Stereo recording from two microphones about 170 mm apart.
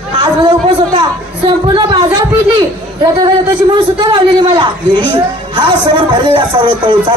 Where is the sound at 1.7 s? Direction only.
25° right (ahead or behind).